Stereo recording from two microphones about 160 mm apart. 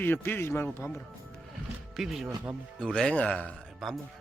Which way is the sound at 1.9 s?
Centre (ahead or behind).